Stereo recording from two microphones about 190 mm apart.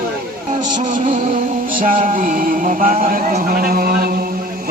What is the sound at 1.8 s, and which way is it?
Speech, 45° right (ahead or behind).